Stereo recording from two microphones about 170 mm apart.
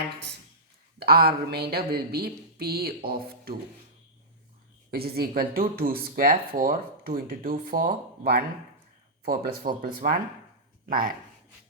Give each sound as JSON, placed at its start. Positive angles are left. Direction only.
{"t": 0.9, "sound": "speech", "side_deg": -65}
{"t": 4.9, "sound": "speech", "side_deg": -65}